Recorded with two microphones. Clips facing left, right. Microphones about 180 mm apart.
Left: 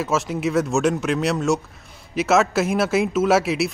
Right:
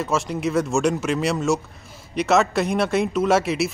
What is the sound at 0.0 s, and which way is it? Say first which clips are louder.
Speech: left 1 dB; centre (ahead or behind).